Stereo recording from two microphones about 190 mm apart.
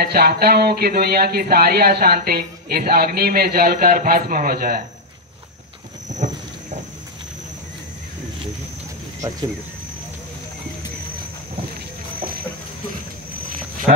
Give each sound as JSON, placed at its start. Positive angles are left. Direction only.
{"t": 0.0, "sound": "speech", "side_deg": -55}
{"t": 6.0, "sound": "a sound", "side_deg": -40}
{"t": 13.9, "sound": "speech", "side_deg": -50}